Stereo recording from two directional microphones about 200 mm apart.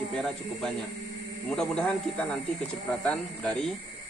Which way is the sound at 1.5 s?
5° left (ahead or behind).